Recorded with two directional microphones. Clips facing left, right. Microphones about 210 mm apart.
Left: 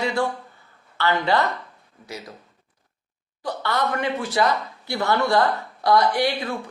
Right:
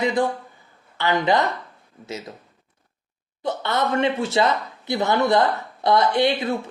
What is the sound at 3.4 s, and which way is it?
Speech, 20° right (ahead or behind).